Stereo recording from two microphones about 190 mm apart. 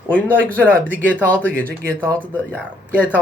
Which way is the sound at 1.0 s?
10° left (ahead or behind).